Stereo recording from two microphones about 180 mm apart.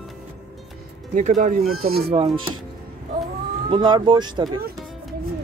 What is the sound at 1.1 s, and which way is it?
Speech, 45° right (ahead or behind).